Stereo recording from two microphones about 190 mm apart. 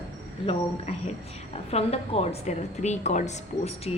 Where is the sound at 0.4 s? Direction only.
35° left (ahead or behind).